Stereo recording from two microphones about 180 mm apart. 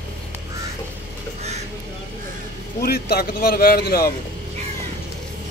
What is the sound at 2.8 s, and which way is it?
Speech, 60° left (ahead or behind).